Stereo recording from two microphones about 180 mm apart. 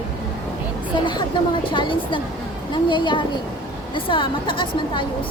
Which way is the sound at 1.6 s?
25° left (ahead or behind).